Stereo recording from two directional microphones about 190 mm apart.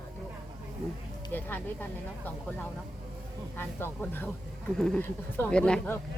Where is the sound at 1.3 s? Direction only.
10° left (ahead or behind).